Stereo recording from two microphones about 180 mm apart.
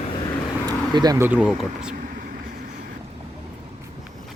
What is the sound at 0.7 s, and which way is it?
Vehicle, 25° right (ahead or behind).